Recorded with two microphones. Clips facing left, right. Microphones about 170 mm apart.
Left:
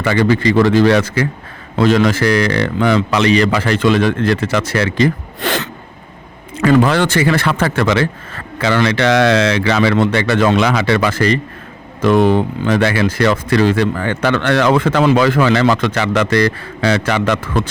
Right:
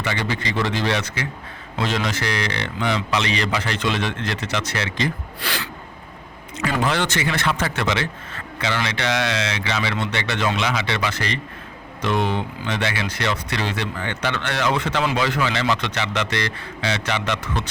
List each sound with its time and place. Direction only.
0.0 s a man's voice: 50° left (ahead or behind)
6.6 s a man's voice: 55° left (ahead or behind)
9.0 s speech: 70° left (ahead or behind)
9.6 s a man's voice: 50° left (ahead or behind)
14.3 s a man's voice: 65° left (ahead or behind); by 17.7 s 50° left (ahead or behind)